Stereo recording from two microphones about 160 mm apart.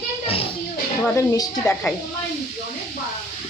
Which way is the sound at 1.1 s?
20° left (ahead or behind).